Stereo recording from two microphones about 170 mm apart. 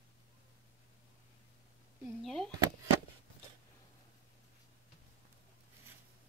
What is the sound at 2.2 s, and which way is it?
Speech, centre (ahead or behind).